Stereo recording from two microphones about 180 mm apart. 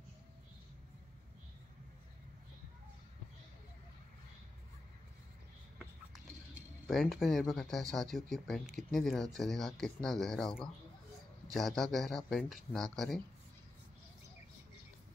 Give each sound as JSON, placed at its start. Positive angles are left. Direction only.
{"t": 6.9, "sound": "speech", "side_deg": 0}